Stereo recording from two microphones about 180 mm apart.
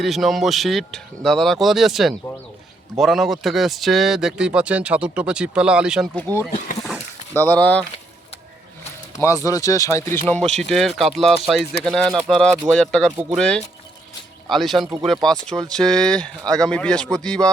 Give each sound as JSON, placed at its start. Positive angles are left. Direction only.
{"t": 0.0, "sound": "speech", "side_deg": 0}
{"t": 6.3, "sound": "speech", "side_deg": -20}
{"t": 7.3, "sound": "speech", "side_deg": 10}
{"t": 9.1, "sound": "speech", "side_deg": 15}
{"t": 14.5, "sound": "speech", "side_deg": 0}